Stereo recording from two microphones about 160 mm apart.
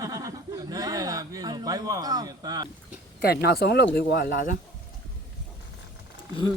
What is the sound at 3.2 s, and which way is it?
Speech, 80° left.